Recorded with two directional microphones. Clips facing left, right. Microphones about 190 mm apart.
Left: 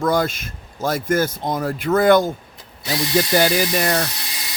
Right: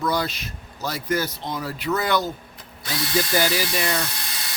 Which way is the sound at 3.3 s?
45° left (ahead or behind).